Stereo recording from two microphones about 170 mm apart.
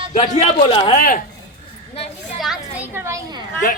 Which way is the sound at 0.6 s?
30° left (ahead or behind).